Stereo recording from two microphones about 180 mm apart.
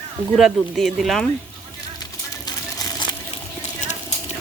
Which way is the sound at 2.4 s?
25° left (ahead or behind).